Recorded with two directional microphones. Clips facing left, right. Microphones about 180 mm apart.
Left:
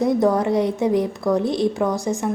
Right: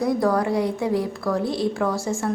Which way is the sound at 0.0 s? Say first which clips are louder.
Left 3 dB; 20° left (ahead or behind).